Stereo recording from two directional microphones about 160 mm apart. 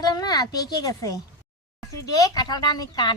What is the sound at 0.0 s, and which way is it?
A child's voice, 25° left (ahead or behind).